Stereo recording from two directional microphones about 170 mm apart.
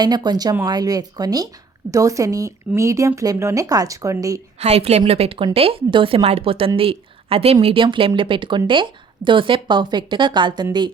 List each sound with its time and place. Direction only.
0.0 s speech: 25° right (ahead or behind)
4.6 s speech: 40° right (ahead or behind)